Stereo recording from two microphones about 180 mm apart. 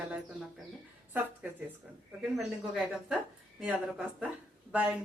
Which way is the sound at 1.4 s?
10° right (ahead or behind).